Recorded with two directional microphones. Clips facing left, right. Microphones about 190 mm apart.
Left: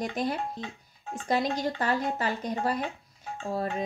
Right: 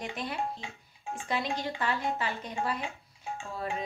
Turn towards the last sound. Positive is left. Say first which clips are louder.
# left 5 dB
turn(degrees=40)  # may be behind; listen again after turning